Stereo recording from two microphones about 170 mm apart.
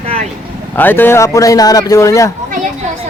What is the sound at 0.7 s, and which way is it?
Speech, 10° left (ahead or behind).